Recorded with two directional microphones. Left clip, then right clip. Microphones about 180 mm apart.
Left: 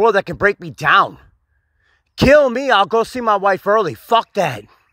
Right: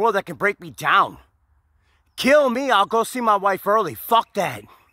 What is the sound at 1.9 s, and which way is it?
Speech, centre (ahead or behind).